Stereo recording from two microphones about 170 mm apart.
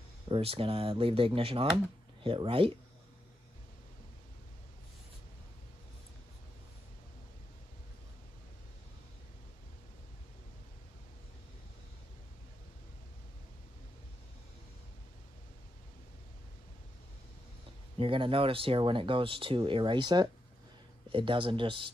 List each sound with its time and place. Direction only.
0.3 s speech: 35° right (ahead or behind)
17.9 s speech: 30° right (ahead or behind)